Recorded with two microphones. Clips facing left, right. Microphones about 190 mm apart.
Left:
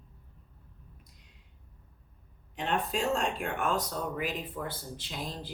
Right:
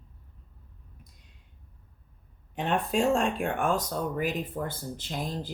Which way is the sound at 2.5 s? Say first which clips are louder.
Right 4 dB; 55° right (ahead or behind).